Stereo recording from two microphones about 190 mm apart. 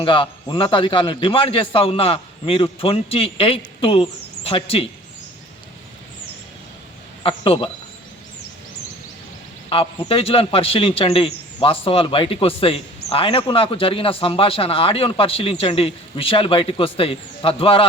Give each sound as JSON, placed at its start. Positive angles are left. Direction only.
{"t": 0.0, "sound": "a man's voice", "side_deg": 25}
{"t": 7.2, "sound": "a man's voice", "side_deg": 30}
{"t": 10.1, "sound": "a man's voice", "side_deg": 30}